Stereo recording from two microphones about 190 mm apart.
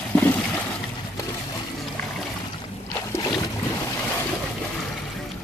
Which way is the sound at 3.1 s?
20° left (ahead or behind).